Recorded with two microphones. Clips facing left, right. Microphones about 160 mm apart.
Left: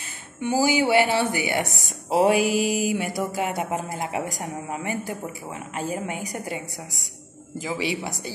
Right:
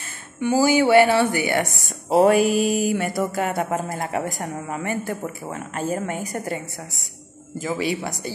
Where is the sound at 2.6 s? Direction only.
5° left (ahead or behind).